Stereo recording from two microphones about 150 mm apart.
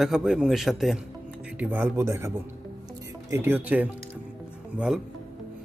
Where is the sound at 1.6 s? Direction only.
10° right (ahead or behind).